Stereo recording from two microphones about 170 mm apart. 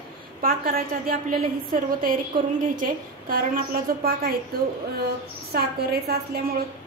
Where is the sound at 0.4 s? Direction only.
55° right (ahead or behind).